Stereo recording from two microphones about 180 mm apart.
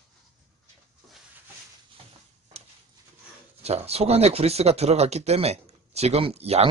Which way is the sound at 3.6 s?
35° right (ahead or behind).